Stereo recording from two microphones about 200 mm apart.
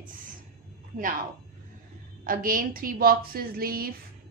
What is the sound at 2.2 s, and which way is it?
A woman's voice, 45° right (ahead or behind).